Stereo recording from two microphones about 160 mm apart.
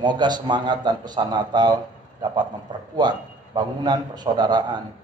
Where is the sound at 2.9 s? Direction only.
25° right (ahead or behind).